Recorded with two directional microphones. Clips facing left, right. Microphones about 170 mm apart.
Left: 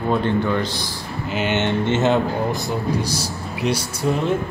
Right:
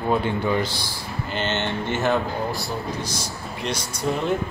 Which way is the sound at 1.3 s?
10° left (ahead or behind).